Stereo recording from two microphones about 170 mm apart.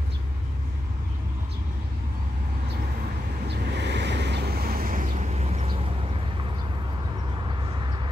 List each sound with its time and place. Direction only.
3.4 s vehicle: 85° right; by 5.9 s 35° right (ahead or behind)
7.4 s vehicle: 25° right (ahead or behind)